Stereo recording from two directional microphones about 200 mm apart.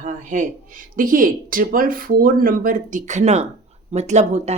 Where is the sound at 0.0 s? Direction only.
40° right (ahead or behind).